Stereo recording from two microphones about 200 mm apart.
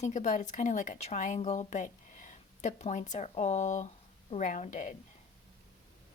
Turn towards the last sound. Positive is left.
turn(degrees=40)  # may be behind; listen again after turning